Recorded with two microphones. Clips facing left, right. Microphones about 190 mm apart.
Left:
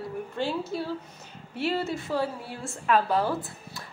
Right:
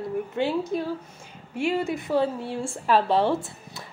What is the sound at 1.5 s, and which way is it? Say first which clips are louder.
A woman's voice: right 3 dB; 10° right (ahead or behind).